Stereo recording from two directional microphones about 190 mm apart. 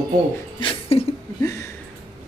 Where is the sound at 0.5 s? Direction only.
25° left (ahead or behind).